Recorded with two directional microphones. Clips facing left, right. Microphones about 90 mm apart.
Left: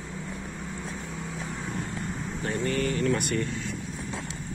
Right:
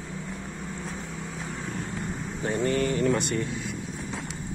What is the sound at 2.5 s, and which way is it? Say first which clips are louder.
Mantra: right 3 dB; 30° right (ahead or behind).